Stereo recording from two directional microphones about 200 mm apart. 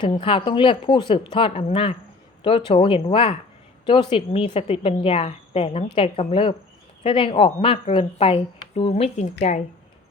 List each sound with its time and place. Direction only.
0.0 s a woman's voice: 25° left (ahead or behind)